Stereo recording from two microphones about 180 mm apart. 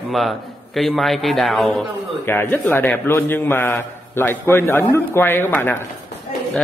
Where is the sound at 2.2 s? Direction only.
15° left (ahead or behind).